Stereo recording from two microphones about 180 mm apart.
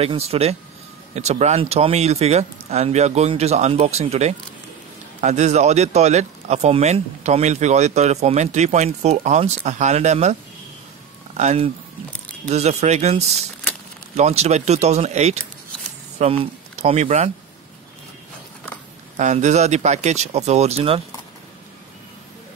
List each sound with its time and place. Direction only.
0.0 s speech: 35° right (ahead or behind)
11.3 s speech: 35° right (ahead or behind)
19.1 s speech: 40° right (ahead or behind)